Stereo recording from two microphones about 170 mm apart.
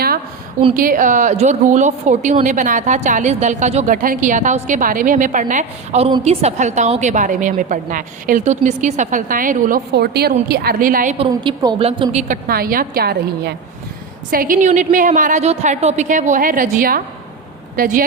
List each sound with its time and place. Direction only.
0.7 s a woman's voice: 55° right (ahead or behind)
9.9 s a woman's voice: 70° right (ahead or behind); by 11.2 s 50° right (ahead or behind)
11.3 s speech: 25° right (ahead or behind)
12.5 s a woman's voice: 60° right (ahead or behind)
14.3 s a woman's voice: 55° right (ahead or behind)